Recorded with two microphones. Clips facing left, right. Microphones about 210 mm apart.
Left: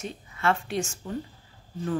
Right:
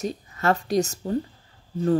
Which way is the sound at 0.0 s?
40° right (ahead or behind).